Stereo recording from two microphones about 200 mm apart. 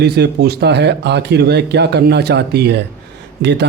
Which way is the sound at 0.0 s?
55° right (ahead or behind).